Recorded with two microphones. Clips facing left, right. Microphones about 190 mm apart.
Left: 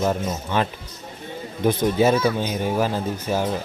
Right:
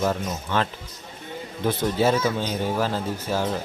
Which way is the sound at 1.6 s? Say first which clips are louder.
Left 3 dB; 15° left (ahead or behind).